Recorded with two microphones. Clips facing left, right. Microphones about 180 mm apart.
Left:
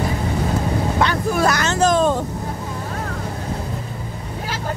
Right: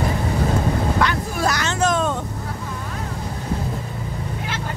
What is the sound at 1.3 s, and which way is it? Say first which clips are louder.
Vehicle: left 4 dB; 60° left (ahead or behind).